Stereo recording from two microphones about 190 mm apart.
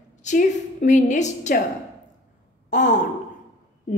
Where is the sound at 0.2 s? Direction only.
40° left (ahead or behind).